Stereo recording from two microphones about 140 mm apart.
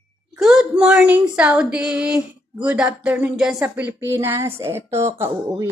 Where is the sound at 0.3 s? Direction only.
5° right (ahead or behind).